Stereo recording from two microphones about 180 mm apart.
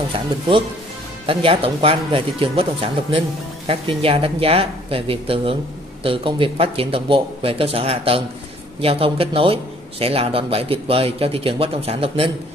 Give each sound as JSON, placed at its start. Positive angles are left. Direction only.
{"t": 1.2, "sound": "a man's voice", "side_deg": -30}